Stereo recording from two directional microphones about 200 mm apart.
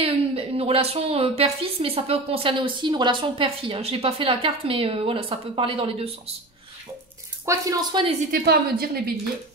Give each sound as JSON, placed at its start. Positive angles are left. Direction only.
{"t": 0.0, "sound": "a woman's voice", "side_deg": -30}
{"t": 7.4, "sound": "speech", "side_deg": -15}
{"t": 8.3, "sound": "a woman's voice", "side_deg": -50}